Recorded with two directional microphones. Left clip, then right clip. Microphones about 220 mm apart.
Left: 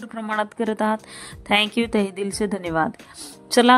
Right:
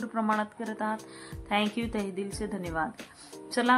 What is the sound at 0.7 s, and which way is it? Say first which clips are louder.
Speech: left 8 dB; 45° left (ahead or behind).